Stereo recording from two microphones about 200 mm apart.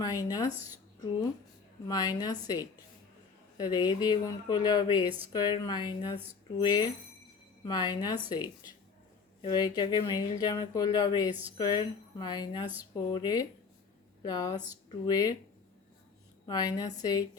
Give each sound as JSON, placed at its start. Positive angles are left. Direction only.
{"t": 0.0, "sound": "speech", "side_deg": 15}
{"t": 1.9, "sound": "speech", "side_deg": 20}
{"t": 9.4, "sound": "speech", "side_deg": 20}
{"t": 16.5, "sound": "speech", "side_deg": 20}